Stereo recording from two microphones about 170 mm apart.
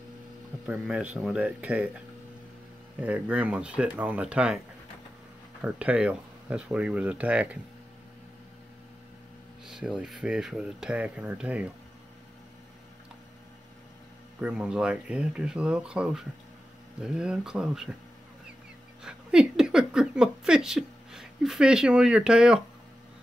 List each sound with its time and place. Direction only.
0.7 s speech: 10° right (ahead or behind)
5.6 s speech: 10° right (ahead or behind)
9.7 s speech: 5° right (ahead or behind)
14.4 s speech: 5° right (ahead or behind)
19.0 s speech: 5° right (ahead or behind)